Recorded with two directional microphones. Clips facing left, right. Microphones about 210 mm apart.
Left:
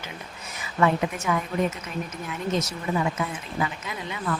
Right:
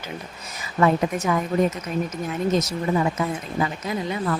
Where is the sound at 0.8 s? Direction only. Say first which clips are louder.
Right 3 dB; 40° right (ahead or behind).